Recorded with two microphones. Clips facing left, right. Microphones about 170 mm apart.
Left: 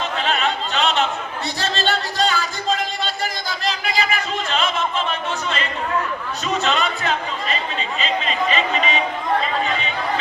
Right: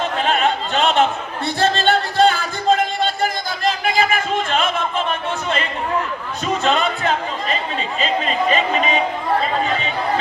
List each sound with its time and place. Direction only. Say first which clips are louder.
0.2 s opera: right 3 dB; 50° right (ahead or behind)
1.5 s music: right 6 dB; 55° right (ahead or behind)
6.6 s music: right 4 dB; 50° right (ahead or behind)
7.9 s chatter: right 3 dB; 45° right (ahead or behind)